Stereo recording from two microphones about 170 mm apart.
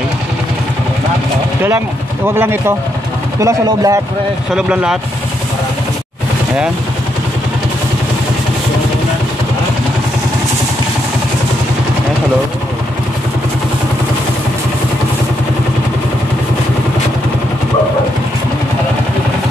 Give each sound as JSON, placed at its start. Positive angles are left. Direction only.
{"t": 2.2, "sound": "speech", "side_deg": -15}
{"t": 4.6, "sound": "speech", "side_deg": -5}